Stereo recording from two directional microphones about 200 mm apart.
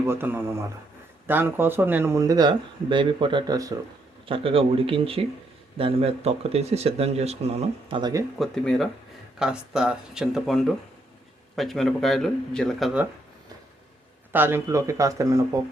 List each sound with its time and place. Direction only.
0.0 s speech: 10° right (ahead or behind)
8.4 s speech: centre (ahead or behind)
14.3 s speech: 10° right (ahead or behind)